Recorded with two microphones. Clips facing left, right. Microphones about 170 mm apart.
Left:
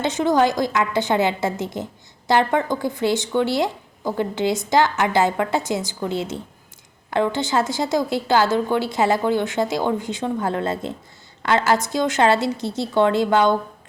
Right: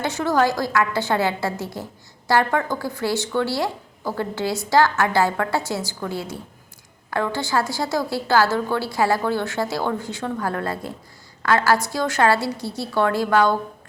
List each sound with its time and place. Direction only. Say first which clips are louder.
0.0 s a woman's voice: left 2 dB; 20° left (ahead or behind)